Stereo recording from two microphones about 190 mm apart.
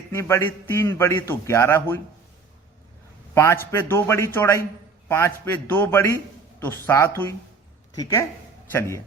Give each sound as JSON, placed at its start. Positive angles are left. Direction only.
{"t": 0.1, "sound": "a man's voice", "side_deg": 15}
{"t": 3.3, "sound": "a man's voice", "side_deg": 15}